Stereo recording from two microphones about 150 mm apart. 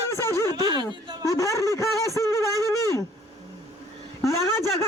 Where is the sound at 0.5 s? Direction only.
30° right (ahead or behind).